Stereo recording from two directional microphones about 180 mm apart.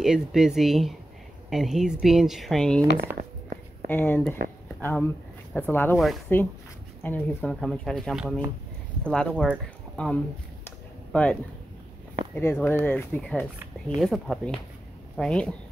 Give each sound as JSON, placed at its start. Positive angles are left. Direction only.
{"t": 0.0, "sound": "speech", "side_deg": -5}
{"t": 3.2, "sound": "a sound", "side_deg": -50}
{"t": 3.9, "sound": "speech", "side_deg": 10}
{"t": 4.4, "sound": "speech", "side_deg": -70}
{"t": 4.8, "sound": "speech", "side_deg": 10}
{"t": 9.3, "sound": "speech", "side_deg": -5}
{"t": 9.9, "sound": "a sound", "side_deg": 5}
{"t": 12.4, "sound": "speech", "side_deg": 10}